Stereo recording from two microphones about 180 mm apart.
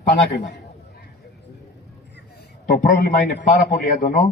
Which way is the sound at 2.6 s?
50° left (ahead or behind).